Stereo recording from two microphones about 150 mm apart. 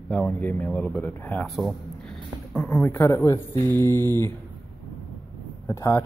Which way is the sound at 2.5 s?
10° left (ahead or behind).